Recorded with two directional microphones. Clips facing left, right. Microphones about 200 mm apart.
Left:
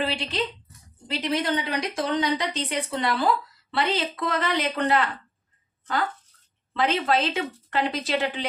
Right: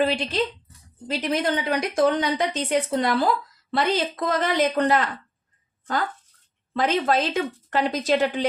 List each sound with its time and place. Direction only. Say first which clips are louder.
0.0 s a woman's voice: right 5 dB; 45° right (ahead or behind)
6.7 s speech: right 2 dB; 45° right (ahead or behind)